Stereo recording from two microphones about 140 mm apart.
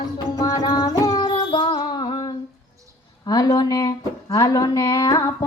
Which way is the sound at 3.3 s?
25° left (ahead or behind).